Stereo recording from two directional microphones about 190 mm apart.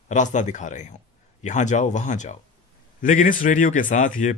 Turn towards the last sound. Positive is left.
turn(degrees=40)  # may be behind; listen again after turning